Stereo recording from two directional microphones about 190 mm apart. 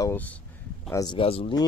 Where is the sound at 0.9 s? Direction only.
20° left (ahead or behind).